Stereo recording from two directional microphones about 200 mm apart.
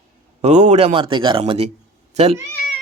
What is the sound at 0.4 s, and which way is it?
Speech, 35° right (ahead or behind).